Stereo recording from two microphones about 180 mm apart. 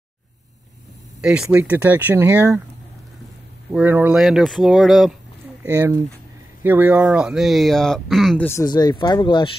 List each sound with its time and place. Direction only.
1.2 s speech: 5° right (ahead or behind)
3.7 s speech: 10° right (ahead or behind)
5.6 s speech: 10° right (ahead or behind)
8.5 s speech: 20° left (ahead or behind)